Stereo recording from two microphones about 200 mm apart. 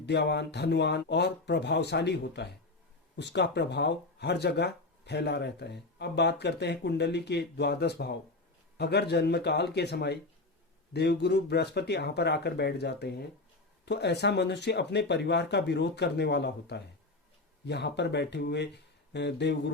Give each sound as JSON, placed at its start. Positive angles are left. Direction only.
{"t": 0.0, "sound": "speech", "side_deg": 55}